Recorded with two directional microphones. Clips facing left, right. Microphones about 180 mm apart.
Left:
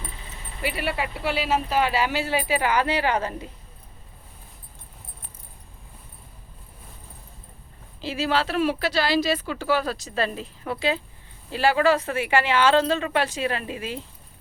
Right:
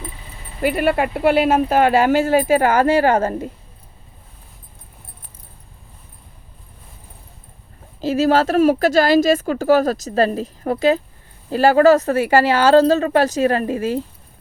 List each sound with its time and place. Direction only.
0.6 s speech: 50° right (ahead or behind)
8.0 s speech: 45° right (ahead or behind)